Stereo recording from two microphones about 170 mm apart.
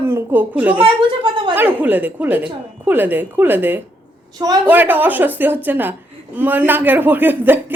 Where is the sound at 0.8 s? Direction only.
30° right (ahead or behind).